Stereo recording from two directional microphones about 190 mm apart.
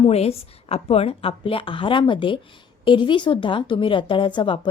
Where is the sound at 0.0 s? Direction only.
30° left (ahead or behind).